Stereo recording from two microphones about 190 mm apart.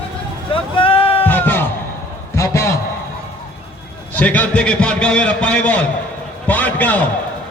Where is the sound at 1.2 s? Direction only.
10° left (ahead or behind).